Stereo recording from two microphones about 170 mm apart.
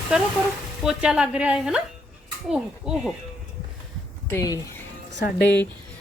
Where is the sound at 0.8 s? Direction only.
5° right (ahead or behind).